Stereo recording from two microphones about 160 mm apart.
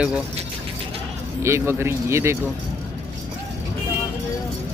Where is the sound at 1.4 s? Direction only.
15° right (ahead or behind).